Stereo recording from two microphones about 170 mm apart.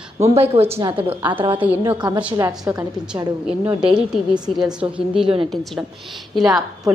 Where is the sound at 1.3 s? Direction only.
30° right (ahead or behind).